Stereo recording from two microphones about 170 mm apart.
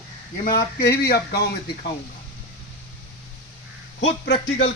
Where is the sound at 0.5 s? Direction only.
70° left (ahead or behind).